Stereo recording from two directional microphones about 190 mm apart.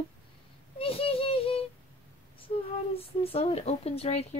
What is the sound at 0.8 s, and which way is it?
Child singing, 30° left (ahead or behind).